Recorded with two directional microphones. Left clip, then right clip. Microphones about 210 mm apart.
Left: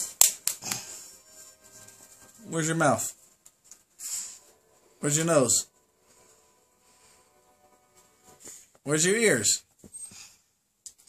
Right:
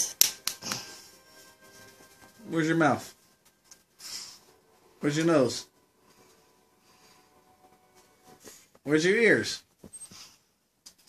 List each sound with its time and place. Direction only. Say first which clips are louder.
0.5 s finger snapping: even; 10° left (ahead or behind)
2.5 s speech: right 1 dB; 45° left (ahead or behind)
5.0 s speech: even; 45° left (ahead or behind)
8.8 s speech: right 1 dB; 45° left (ahead or behind)